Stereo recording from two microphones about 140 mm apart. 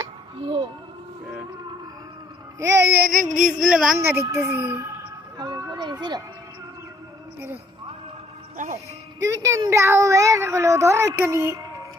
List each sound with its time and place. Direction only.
0.4 s speech: 35° right (ahead or behind)
2.6 s speech: 20° right (ahead or behind)
3.0 s music: 75° right (ahead or behind)
3.6 s a woman's voice: 5° right (ahead or behind)
3.9 s a child's voice: 15° right (ahead or behind)
5.4 s speech: 25° right (ahead or behind)
8.5 s speech: 65° right (ahead or behind)
9.2 s speech: 20° right (ahead or behind)